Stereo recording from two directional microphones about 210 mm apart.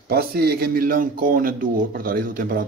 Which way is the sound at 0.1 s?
45° right (ahead or behind).